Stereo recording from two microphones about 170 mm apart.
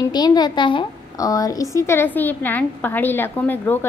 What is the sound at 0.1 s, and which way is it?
A woman's voice, 25° left (ahead or behind).